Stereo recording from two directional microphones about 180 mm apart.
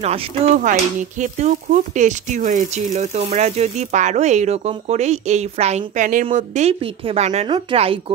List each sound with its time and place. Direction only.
0.0 s speech: 40° right (ahead or behind)